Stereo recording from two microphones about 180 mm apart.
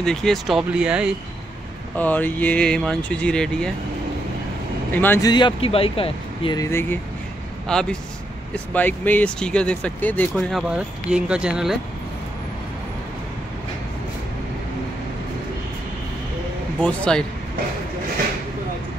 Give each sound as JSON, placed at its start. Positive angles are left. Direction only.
{"t": 0.0, "sound": "speech", "side_deg": 5}
{"t": 2.0, "sound": "speech", "side_deg": 10}
{"t": 4.9, "sound": "speech", "side_deg": 10}
{"t": 5.3, "sound": "speech", "side_deg": 30}
{"t": 16.8, "sound": "speech", "side_deg": 5}